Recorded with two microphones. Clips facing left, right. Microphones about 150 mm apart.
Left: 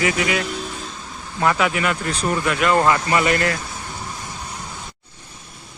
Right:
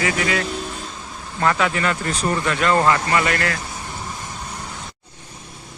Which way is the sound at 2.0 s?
Centre (ahead or behind).